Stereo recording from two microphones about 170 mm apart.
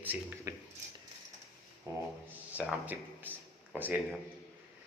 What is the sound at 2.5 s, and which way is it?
Speech, 10° right (ahead or behind).